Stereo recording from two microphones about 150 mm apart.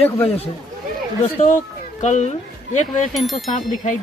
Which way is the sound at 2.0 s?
50° left (ahead or behind).